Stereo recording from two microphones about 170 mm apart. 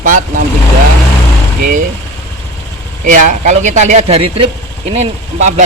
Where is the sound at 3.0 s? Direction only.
45° right (ahead or behind).